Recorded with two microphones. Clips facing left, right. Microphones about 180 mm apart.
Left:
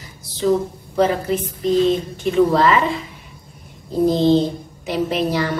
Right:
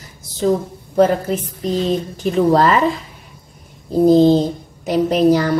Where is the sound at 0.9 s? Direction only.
45° right (ahead or behind).